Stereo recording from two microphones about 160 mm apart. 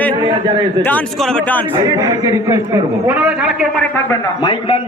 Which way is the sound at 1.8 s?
20° right (ahead or behind).